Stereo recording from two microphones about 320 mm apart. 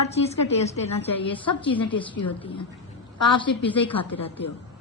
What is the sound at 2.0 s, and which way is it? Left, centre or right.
A woman's voice, centre.